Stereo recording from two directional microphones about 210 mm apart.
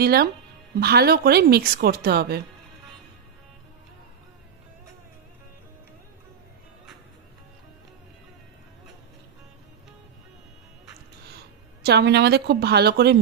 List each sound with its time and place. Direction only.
0.0 s speech: 45° right (ahead or behind)
11.8 s speech: 50° right (ahead or behind)